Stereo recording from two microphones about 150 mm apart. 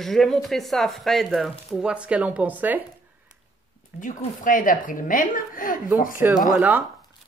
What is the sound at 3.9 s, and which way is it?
A woman's voice, 60° left (ahead or behind).